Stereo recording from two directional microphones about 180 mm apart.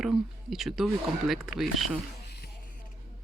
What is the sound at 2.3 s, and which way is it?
Music, 65° left (ahead or behind).